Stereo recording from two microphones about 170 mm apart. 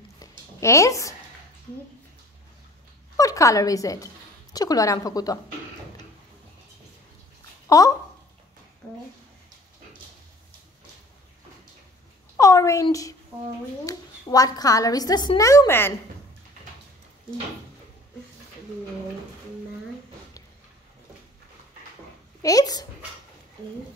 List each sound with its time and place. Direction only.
0.2 s a sound: 15° left (ahead or behind)
3.2 s a woman's voice: 20° left (ahead or behind)
7.6 s speech: 20° left (ahead or behind)
12.4 s a sound: 20° left (ahead or behind)
12.8 s a woman's voice: 20° left (ahead or behind)
22.4 s a woman's voice: 20° left (ahead or behind)